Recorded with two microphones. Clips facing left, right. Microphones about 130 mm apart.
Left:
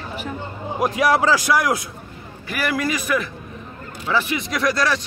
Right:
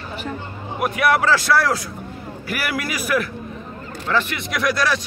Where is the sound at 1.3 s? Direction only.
15° left (ahead or behind).